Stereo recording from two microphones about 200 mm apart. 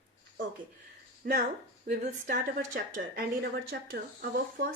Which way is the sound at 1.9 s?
50° right (ahead or behind).